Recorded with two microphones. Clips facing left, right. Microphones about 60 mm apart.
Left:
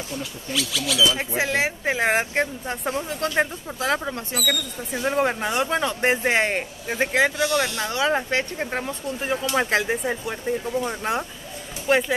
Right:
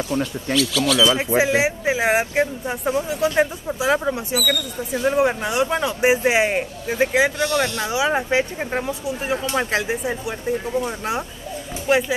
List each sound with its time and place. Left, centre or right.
0.1 s speech: right
1.1 s speech: centre